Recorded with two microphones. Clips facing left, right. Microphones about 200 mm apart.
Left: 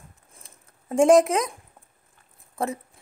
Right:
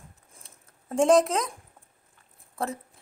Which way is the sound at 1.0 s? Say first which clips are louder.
Left 4 dB; centre (ahead or behind).